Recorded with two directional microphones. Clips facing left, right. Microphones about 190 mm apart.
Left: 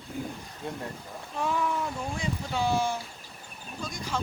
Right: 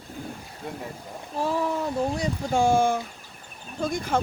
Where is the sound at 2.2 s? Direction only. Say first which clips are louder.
Right 6 dB; 45° right (ahead or behind).